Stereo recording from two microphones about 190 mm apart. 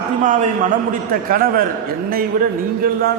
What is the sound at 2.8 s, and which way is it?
Speech, 50° right (ahead or behind).